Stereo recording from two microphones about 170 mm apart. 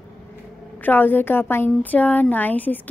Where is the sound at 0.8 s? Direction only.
10° left (ahead or behind).